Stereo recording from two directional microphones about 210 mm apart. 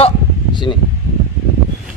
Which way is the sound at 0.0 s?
20° left (ahead or behind).